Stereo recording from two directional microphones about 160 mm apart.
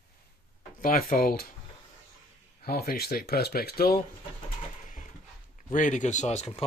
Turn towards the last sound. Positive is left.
turn(degrees=40)  # may be behind; listen again after turning